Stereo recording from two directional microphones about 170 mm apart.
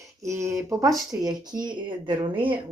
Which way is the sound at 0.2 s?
15° right (ahead or behind).